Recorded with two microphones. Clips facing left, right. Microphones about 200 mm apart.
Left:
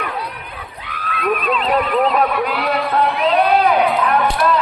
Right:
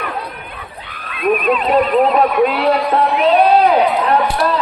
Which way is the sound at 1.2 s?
25° right (ahead or behind).